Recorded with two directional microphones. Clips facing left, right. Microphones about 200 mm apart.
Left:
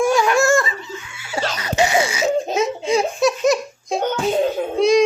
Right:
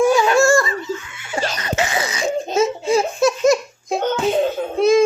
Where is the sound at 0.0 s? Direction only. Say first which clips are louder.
Right 2 dB; centre (ahead or behind).